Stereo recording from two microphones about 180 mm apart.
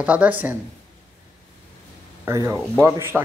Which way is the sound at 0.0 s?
10° right (ahead or behind).